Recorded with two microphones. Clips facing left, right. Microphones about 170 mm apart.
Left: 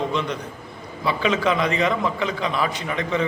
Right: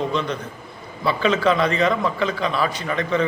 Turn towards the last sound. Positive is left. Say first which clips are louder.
# right 2 dB
turn(degrees=15)  # may be behind; listen again after turning